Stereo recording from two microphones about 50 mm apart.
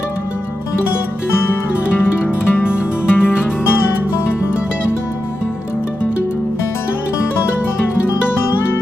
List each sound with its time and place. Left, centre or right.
2.5 s music: left